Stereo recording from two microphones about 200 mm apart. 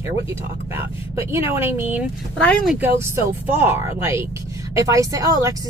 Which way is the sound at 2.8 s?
10° right (ahead or behind).